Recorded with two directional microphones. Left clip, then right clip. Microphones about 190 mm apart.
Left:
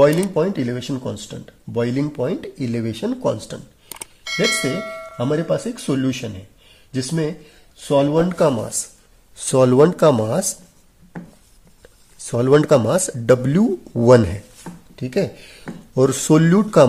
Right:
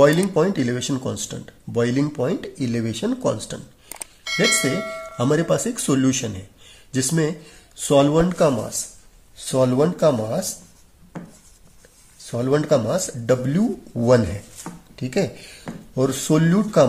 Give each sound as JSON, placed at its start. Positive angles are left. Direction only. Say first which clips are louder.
{"t": 0.0, "sound": "speech", "louder": "left 1 dB", "side_deg": 20}
{"t": 3.9, "sound": "speech", "louder": "even", "side_deg": 0}
{"t": 8.3, "sound": "speech", "louder": "left 1 dB", "side_deg": 25}
{"t": 9.4, "sound": "speech", "louder": "left 5 dB", "side_deg": 50}
{"t": 12.2, "sound": "speech", "louder": "left 6 dB", "side_deg": 45}
{"t": 15.0, "sound": "speech", "louder": "left 2 dB", "side_deg": 25}
{"t": 15.9, "sound": "speech", "louder": "left 5 dB", "side_deg": 45}